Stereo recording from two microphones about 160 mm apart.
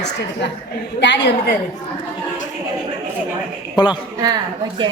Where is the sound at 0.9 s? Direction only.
90° left.